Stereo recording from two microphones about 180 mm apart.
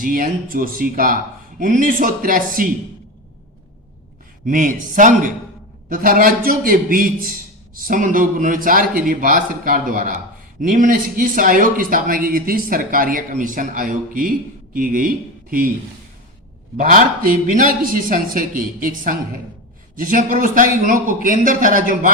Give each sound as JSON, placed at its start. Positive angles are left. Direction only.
{"t": 0.0, "sound": "speech", "side_deg": -50}
{"t": 4.4, "sound": "speech", "side_deg": -45}
{"t": 16.7, "sound": "speech", "side_deg": -45}